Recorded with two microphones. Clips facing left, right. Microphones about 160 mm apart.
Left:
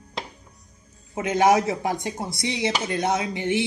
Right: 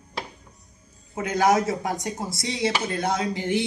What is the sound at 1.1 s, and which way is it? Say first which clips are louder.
Speech: left 2 dB; 25° left (ahead or behind).